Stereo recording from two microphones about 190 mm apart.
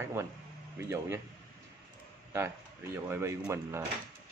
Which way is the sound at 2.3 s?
10° right (ahead or behind).